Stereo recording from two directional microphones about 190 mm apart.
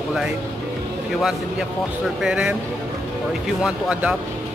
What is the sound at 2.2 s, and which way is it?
Speech, 5° right (ahead or behind).